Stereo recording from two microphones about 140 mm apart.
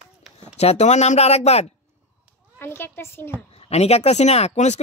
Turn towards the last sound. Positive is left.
turn(degrees=55)  # may be behind; listen again after turning